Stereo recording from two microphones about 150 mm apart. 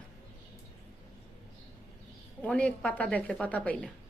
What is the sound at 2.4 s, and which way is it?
A woman's voice, 5° left (ahead or behind).